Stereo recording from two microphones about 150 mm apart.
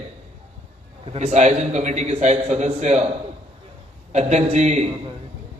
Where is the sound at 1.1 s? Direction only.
45° right (ahead or behind).